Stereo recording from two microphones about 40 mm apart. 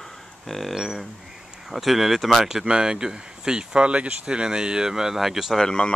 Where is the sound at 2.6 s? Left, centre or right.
Right; by 5.6 s centre.